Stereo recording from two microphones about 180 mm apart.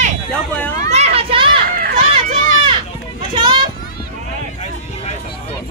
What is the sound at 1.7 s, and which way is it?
Run, 55° right (ahead or behind).